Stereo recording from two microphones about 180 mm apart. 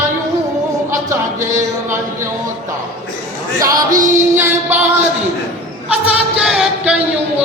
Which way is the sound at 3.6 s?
20° right (ahead or behind).